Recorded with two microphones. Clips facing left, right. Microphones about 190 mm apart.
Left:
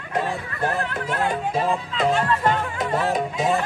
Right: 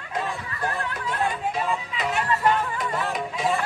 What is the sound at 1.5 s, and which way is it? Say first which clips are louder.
Music: left 4 dB; 40° left (ahead or behind).